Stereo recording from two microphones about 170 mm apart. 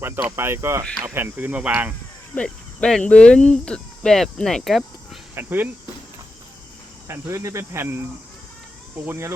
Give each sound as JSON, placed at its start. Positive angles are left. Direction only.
{"t": 0.0, "sound": "speech", "side_deg": -10}
{"t": 2.3, "sound": "speech", "side_deg": 5}
{"t": 5.3, "sound": "speech", "side_deg": -10}
{"t": 7.1, "sound": "speech", "side_deg": -15}
{"t": 9.0, "sound": "speech", "side_deg": -15}